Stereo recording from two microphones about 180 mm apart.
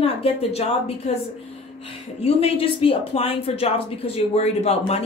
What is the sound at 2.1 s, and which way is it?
Speech, 35° left (ahead or behind).